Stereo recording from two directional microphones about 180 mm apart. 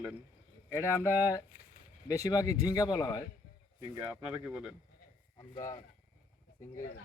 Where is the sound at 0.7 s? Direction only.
15° left (ahead or behind).